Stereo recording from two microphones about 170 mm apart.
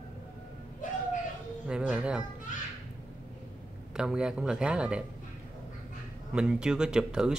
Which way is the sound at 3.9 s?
5° right (ahead or behind).